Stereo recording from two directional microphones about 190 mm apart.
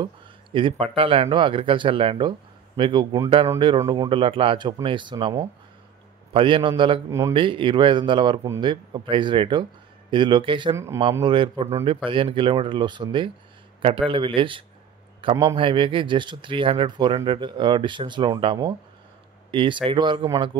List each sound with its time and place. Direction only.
0.0 s speech: 25° right (ahead or behind)
7.1 s speech: 15° right (ahead or behind)
7.3 s speech: 25° right (ahead or behind)